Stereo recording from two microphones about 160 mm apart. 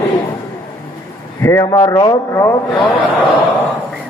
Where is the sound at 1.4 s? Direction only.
20° left (ahead or behind).